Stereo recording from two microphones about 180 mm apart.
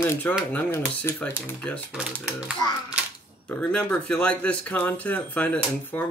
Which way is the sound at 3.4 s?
10° left (ahead or behind).